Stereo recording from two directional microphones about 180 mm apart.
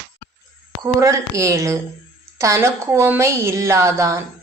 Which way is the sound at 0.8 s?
15° right (ahead or behind).